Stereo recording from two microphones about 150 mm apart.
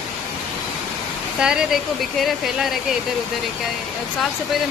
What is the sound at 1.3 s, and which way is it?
Speech, 5° right (ahead or behind).